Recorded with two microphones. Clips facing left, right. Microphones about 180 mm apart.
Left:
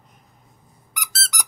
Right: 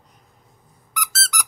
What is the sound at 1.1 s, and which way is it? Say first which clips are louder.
Squeak: right 4 dB; 35° left (ahead or behind).